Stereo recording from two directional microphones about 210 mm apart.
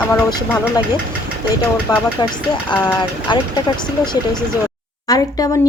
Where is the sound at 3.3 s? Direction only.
20° left (ahead or behind).